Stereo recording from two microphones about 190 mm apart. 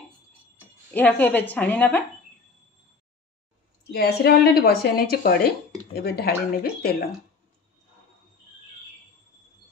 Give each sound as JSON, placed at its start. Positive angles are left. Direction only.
{"t": 0.9, "sound": "a woman's voice", "side_deg": 10}
{"t": 3.9, "sound": "speech", "side_deg": 55}